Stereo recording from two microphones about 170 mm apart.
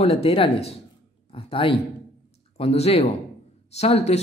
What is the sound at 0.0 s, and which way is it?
Speech, 35° left (ahead or behind).